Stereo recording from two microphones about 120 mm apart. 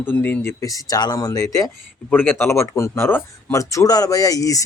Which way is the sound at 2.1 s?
15° left (ahead or behind).